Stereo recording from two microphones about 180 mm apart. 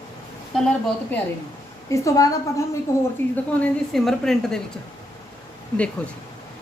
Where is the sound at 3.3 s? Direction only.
5° left (ahead or behind).